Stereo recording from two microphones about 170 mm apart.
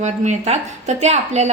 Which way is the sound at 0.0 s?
40° right (ahead or behind).